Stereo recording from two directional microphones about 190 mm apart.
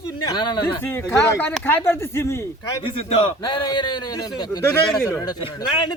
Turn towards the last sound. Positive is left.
turn(degrees=25)  # may be behind; listen again after turning